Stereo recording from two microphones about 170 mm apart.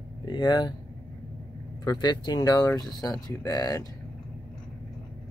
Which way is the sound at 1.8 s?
25° left (ahead or behind).